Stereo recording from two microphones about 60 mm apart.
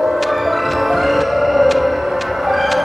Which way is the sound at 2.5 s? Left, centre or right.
Centre.